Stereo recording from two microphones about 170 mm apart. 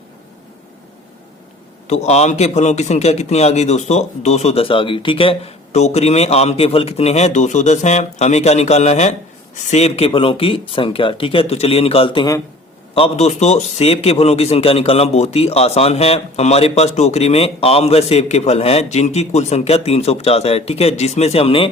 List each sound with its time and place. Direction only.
1.9 s a man's voice: 40° left (ahead or behind)
12.9 s a man's voice: 35° left (ahead or behind)